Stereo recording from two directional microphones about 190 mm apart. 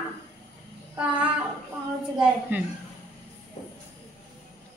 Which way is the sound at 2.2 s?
10° right (ahead or behind).